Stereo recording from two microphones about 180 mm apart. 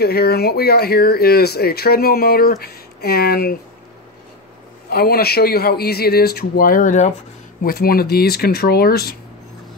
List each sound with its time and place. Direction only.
0.0 s speech: 60° left (ahead or behind)
4.8 s speech: 60° left (ahead or behind)